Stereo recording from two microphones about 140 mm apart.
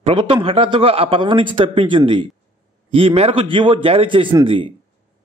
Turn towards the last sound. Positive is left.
turn(degrees=-35)  # may be behind; listen again after turning